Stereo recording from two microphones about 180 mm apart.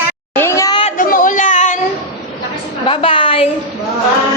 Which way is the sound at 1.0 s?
50° left (ahead or behind).